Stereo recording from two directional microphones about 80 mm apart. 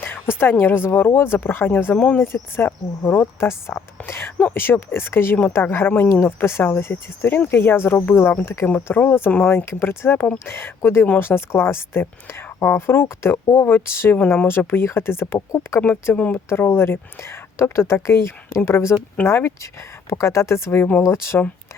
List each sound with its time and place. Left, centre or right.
0.0 s a sound: left
0.6 s speech: left
2.0 s speech: centre
2.2 s speech: left
11.0 s speech: centre
11.3 s speech: left
16.1 s speech: centre
16.5 s speech: left